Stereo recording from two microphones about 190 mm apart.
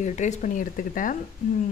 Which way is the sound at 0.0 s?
40° left (ahead or behind).